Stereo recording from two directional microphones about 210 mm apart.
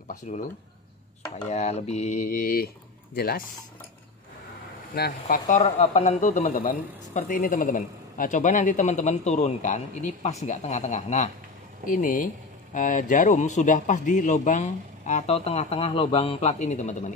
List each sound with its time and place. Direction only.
0.3 s a man's voice: 35° left (ahead or behind)
1.5 s a man's voice: 30° left (ahead or behind)
4.9 s speech: 50° left (ahead or behind)
5.5 s a man's voice: 35° left (ahead or behind)